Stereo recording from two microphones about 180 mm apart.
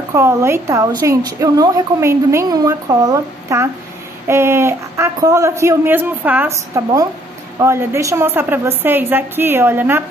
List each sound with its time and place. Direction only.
0.1 s a woman's voice: 15° right (ahead or behind)